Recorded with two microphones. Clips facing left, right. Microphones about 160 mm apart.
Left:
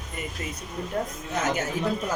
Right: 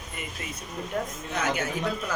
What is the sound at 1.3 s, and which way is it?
Speech, 45° left (ahead or behind).